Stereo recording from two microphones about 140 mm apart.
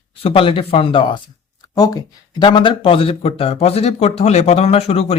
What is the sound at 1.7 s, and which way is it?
Speech, 25° left (ahead or behind).